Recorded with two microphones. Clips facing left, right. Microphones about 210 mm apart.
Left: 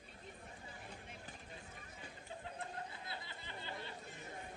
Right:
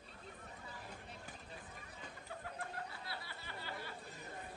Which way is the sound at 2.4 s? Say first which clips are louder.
Even; 20° left (ahead or behind).